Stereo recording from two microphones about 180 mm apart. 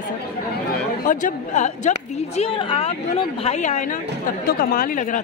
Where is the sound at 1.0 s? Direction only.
45° left (ahead or behind).